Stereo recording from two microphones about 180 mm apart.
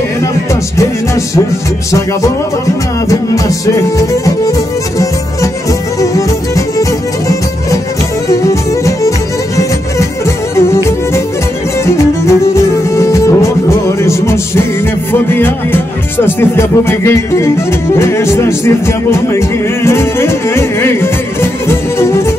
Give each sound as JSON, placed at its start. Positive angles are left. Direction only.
{"t": 0.7, "sound": "music", "side_deg": 15}